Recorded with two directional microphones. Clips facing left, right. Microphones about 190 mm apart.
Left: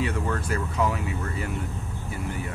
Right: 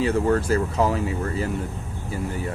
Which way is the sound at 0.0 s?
35° right (ahead or behind).